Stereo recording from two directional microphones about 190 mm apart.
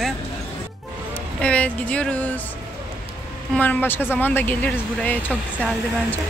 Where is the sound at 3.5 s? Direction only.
10° left (ahead or behind).